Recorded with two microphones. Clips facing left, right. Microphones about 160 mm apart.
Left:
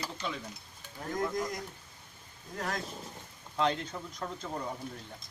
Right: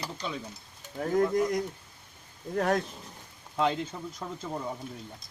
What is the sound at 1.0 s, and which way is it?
Speech, 65° right (ahead or behind).